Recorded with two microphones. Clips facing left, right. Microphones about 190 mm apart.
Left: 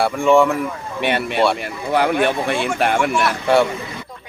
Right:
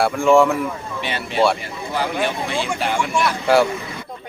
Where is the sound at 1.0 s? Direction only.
60° left (ahead or behind).